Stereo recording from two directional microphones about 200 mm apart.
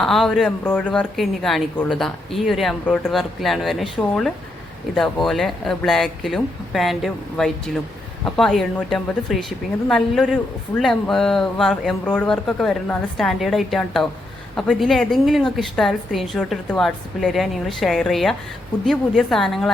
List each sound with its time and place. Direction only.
0.0 s speech: centre (ahead or behind)